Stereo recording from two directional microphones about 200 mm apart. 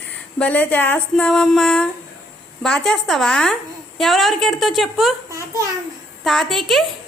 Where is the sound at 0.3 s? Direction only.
5° left (ahead or behind).